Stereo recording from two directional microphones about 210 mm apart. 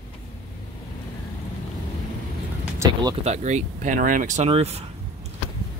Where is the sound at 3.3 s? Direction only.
35° right (ahead or behind).